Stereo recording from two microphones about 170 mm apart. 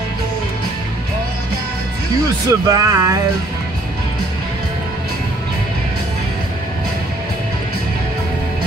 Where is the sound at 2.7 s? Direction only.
20° right (ahead or behind).